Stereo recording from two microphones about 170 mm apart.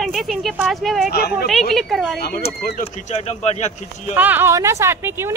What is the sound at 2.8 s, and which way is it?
Speech, 45° left (ahead or behind).